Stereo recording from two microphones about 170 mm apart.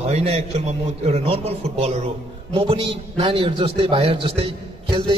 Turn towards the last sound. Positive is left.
turn(degrees=-30)  # may be behind; listen again after turning